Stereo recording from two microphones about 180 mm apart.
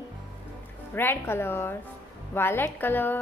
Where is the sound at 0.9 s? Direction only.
10° left (ahead or behind).